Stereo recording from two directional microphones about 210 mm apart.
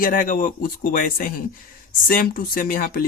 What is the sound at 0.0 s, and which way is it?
Speech, 40° left (ahead or behind).